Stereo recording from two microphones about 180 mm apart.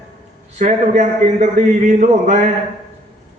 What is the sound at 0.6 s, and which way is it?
A man's voice, 40° right (ahead or behind).